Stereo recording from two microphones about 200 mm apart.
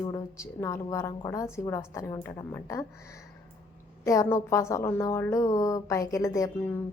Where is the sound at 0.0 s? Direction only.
15° left (ahead or behind).